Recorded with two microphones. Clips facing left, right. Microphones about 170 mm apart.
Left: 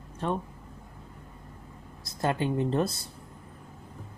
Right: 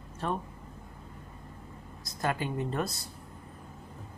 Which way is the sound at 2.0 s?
30° left (ahead or behind).